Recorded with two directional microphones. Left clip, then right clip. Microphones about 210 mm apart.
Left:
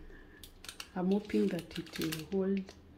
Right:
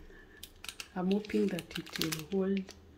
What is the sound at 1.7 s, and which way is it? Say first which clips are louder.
Speech: right 2 dB; 25° right (ahead or behind).